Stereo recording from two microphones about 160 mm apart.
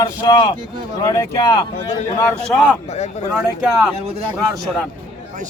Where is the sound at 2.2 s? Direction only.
10° left (ahead or behind).